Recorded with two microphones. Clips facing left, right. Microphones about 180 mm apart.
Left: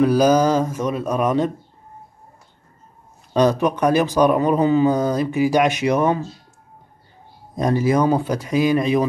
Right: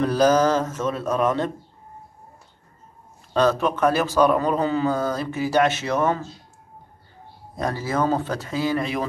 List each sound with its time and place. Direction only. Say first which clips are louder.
0.0 s speech: left 3 dB; 10° left (ahead or behind)
3.3 s speech: left 3 dB; 15° left (ahead or behind)
7.5 s speech: left 7 dB; 15° left (ahead or behind)